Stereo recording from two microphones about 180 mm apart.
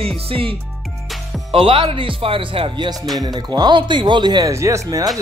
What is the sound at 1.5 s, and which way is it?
Speech, 30° right (ahead or behind).